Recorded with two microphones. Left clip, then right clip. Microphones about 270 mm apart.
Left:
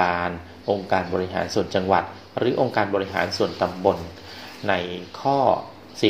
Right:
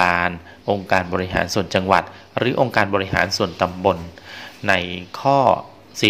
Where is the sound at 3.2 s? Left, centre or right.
Right.